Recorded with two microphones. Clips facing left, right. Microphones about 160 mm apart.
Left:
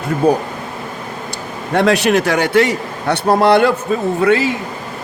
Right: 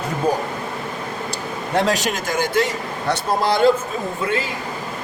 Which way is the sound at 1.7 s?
70° left (ahead or behind).